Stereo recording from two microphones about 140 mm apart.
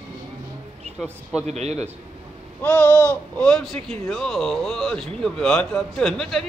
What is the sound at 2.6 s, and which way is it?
A man's voice, 15° left (ahead or behind).